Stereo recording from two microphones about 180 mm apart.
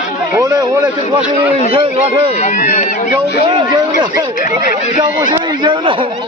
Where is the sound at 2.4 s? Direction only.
40° left (ahead or behind).